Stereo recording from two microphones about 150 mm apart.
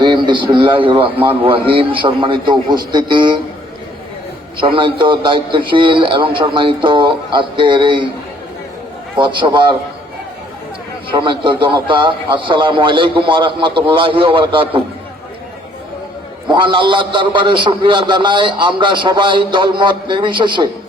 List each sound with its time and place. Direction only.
0.0 s a man's voice: 30° right (ahead or behind)
4.6 s a man's voice: 35° right (ahead or behind)
9.1 s a man's voice: 35° right (ahead or behind)
11.1 s a man's voice: 30° right (ahead or behind)
16.5 s a man's voice: 35° right (ahead or behind)